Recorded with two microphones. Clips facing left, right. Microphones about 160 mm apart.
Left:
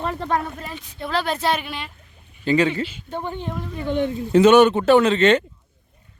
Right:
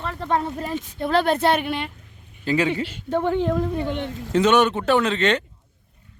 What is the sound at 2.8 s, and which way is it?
Speech, 75° right (ahead or behind).